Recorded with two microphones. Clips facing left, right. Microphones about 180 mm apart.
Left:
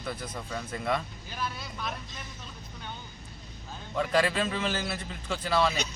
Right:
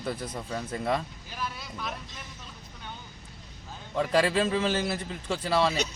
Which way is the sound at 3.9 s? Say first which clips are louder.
Right 2 dB; 30° right (ahead or behind).